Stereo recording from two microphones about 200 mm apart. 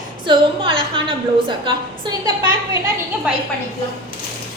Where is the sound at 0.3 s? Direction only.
25° right (ahead or behind).